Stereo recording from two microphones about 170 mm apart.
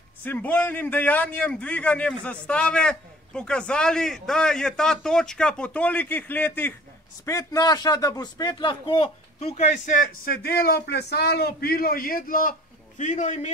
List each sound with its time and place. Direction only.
0.2 s a man's voice: 10° left (ahead or behind); by 13.5 s 45° left (ahead or behind)